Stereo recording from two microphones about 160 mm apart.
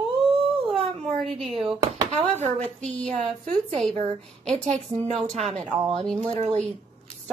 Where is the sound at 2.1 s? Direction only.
45° right (ahead or behind).